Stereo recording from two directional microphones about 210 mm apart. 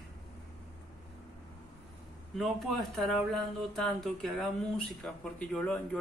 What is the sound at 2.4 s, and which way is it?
Speech, centre (ahead or behind).